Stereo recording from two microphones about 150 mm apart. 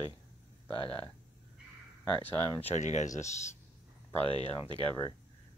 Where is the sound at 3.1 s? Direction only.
20° left (ahead or behind).